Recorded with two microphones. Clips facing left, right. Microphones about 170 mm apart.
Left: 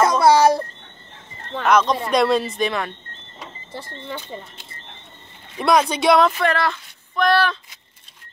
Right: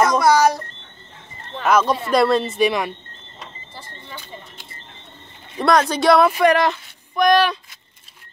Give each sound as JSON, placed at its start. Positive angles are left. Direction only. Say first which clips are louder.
{"t": 0.2, "sound": "a sound", "louder": "left 2 dB", "side_deg": 30}
{"t": 1.6, "sound": "speech", "louder": "even", "side_deg": -5}
{"t": 5.6, "sound": "speech", "louder": "right 1 dB", "side_deg": 0}